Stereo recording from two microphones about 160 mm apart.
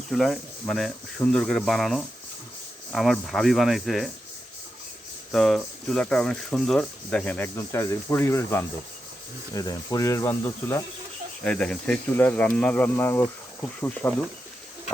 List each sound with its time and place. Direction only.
0.1 s speech: centre (ahead or behind)
5.3 s speech: 5° left (ahead or behind)